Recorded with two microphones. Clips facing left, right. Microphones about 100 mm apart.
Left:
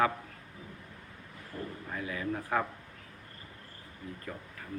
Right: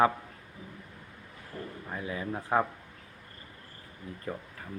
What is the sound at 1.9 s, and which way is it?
Speech, 25° right (ahead or behind).